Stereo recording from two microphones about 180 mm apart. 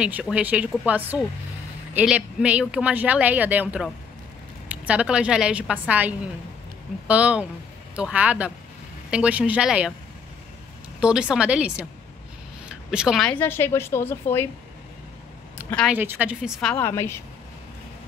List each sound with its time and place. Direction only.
0.0 s speech: 5° right (ahead or behind)
11.0 s a woman's voice: 5° right (ahead or behind); by 14.5 s 15° left (ahead or behind)
15.5 s a sound: 5° left (ahead or behind)
15.9 s speech: 10° right (ahead or behind)
16.7 s a woman's voice: 15° left (ahead or behind)